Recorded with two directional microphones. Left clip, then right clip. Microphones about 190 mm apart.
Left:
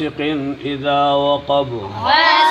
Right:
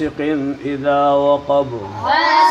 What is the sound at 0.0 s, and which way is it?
Speech, centre (ahead or behind).